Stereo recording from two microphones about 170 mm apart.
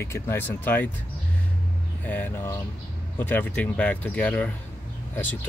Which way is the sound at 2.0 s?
10° left (ahead or behind).